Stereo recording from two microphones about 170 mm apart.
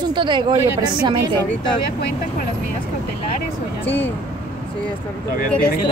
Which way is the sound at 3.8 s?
10° left (ahead or behind).